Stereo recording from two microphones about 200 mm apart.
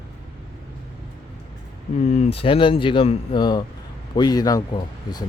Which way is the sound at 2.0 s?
35° left (ahead or behind).